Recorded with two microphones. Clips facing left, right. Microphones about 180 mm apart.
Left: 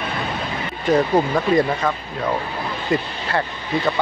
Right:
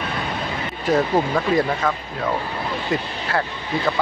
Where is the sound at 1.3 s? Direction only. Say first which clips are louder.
Left 2 dB; centre (ahead or behind).